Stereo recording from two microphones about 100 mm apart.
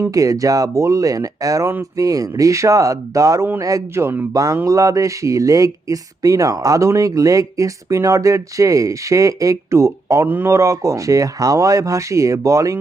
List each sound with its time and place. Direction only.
0.1 s a man's voice: 35° right (ahead or behind)
4.3 s speech: 35° right (ahead or behind)
10.2 s a man's voice: 20° right (ahead or behind)
10.5 s speech: 30° right (ahead or behind)